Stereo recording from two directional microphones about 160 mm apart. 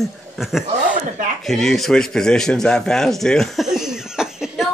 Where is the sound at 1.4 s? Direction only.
Centre (ahead or behind).